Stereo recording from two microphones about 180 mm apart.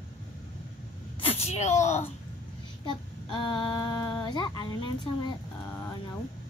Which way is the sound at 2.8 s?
25° left (ahead or behind).